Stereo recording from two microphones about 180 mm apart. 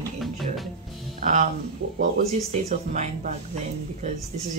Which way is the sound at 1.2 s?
40° right (ahead or behind).